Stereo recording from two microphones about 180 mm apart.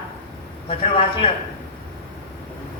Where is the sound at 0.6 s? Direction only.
30° left (ahead or behind).